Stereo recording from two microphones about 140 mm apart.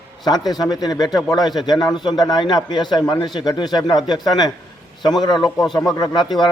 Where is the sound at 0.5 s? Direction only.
25° left (ahead or behind).